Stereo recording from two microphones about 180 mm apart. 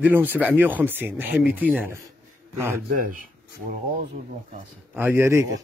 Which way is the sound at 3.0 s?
50° right (ahead or behind).